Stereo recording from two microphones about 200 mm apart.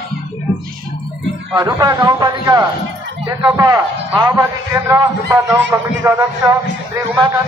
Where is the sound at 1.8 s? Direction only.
20° right (ahead or behind).